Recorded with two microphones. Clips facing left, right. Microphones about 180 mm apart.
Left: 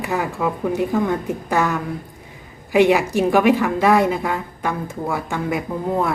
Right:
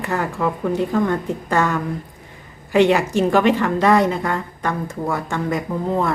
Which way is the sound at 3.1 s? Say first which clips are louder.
Left 1 dB; 10° left (ahead or behind).